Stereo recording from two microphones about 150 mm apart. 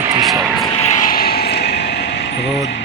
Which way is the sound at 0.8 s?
60° left (ahead or behind).